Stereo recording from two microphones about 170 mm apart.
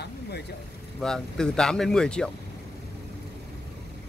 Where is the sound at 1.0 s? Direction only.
5° left (ahead or behind).